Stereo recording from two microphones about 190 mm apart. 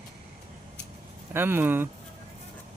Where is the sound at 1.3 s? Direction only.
10° right (ahead or behind).